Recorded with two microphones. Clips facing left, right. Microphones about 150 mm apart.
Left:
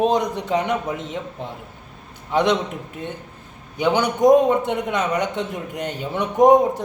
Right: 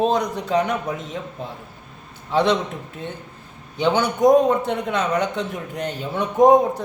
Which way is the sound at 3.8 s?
15° left (ahead or behind).